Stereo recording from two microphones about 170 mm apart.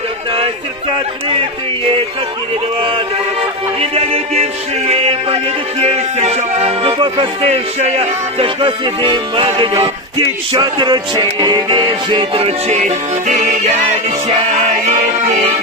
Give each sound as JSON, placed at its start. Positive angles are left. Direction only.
{"t": 0.9, "sound": "music", "side_deg": -30}
{"t": 3.8, "sound": "music", "side_deg": -35}